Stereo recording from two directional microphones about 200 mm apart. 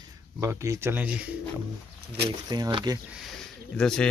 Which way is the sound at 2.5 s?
20° right (ahead or behind).